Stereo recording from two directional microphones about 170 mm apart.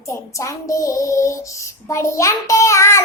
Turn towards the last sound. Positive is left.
turn(degrees=15)  # may be behind; listen again after turning